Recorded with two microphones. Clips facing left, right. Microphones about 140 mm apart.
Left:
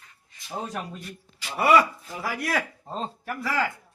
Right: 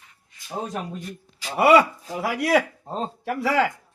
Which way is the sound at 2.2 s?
70° right (ahead or behind).